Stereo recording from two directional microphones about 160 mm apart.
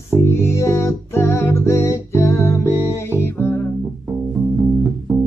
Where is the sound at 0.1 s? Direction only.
15° left (ahead or behind).